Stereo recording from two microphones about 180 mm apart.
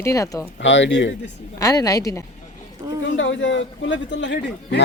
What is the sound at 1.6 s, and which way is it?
Speech, 20° left (ahead or behind).